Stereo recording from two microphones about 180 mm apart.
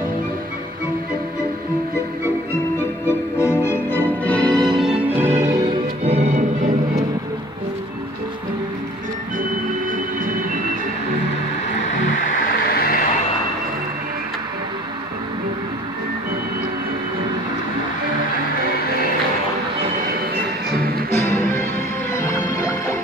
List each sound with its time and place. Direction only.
3.1 s music: 15° left (ahead or behind); by 5.6 s 15° right (ahead or behind)
5.7 s music: 35° right (ahead or behind)
12.6 s vehicle: 60° left (ahead or behind)
21.1 s music: 15° left (ahead or behind)